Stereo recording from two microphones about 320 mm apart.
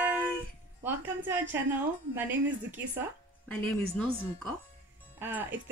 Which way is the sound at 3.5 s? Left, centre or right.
Centre.